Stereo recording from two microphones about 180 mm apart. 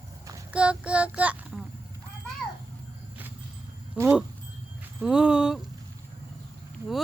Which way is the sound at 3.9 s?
5° right (ahead or behind).